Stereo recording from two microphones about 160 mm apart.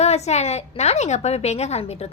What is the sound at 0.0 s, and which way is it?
A woman's voice, 45° left (ahead or behind).